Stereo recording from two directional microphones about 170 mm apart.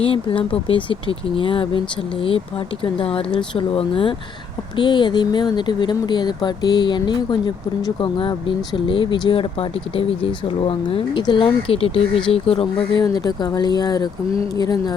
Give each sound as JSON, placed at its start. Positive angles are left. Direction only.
{"t": 0.0, "sound": "speech", "side_deg": 30}